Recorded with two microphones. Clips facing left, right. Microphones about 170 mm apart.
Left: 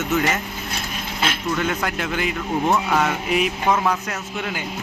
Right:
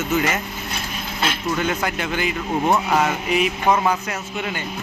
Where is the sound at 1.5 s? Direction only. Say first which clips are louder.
Right 1 dB; centre (ahead or behind).